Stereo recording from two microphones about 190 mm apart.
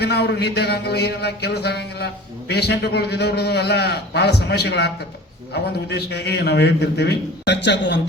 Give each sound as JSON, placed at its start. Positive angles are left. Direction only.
{"t": 0.0, "sound": "a man's voice", "side_deg": 60}